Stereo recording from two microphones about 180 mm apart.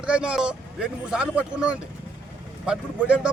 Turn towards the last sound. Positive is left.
turn(degrees=-5)  # may be behind; listen again after turning